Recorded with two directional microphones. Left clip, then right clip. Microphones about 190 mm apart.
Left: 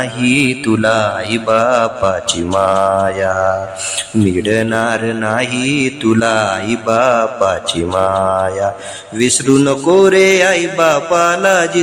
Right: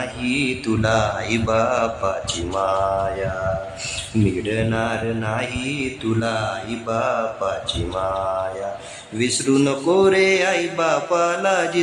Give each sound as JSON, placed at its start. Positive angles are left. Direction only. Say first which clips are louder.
{"t": 0.2, "sound": "mantra", "louder": "left 9 dB", "side_deg": 30}
{"t": 4.4, "sound": "speech", "louder": "left 8 dB", "side_deg": 35}
{"t": 9.1, "sound": "mantra", "louder": "left 7 dB", "side_deg": 30}